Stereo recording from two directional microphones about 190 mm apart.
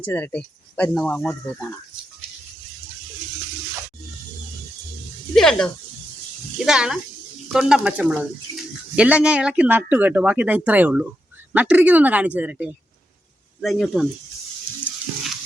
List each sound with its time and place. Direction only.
0.0 s speech: 10° left (ahead or behind)
5.3 s speech: centre (ahead or behind)
6.7 s speech: 5° right (ahead or behind)